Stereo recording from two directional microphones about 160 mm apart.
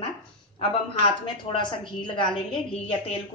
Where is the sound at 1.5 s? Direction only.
30° left (ahead or behind).